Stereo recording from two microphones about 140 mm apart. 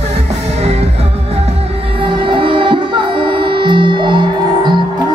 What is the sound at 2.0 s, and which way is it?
Music, 40° right (ahead or behind).